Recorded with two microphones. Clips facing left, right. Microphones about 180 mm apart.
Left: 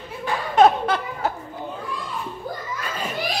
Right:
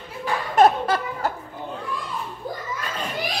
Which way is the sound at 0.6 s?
Centre (ahead or behind).